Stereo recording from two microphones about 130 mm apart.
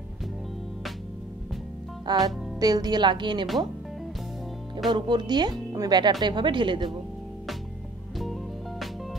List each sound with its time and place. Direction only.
2.0 s speech: 30° right (ahead or behind)
4.9 s speech: 35° right (ahead or behind)
8.2 s music: centre (ahead or behind)